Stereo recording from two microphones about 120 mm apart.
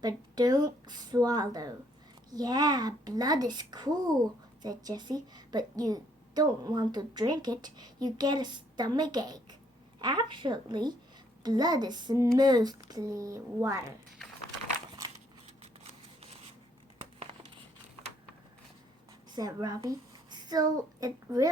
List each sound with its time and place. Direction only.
0.0 s a sound: 35° right (ahead or behind)
4.6 s a woman's voice: 35° right (ahead or behind)
19.3 s a child's voice: 35° right (ahead or behind)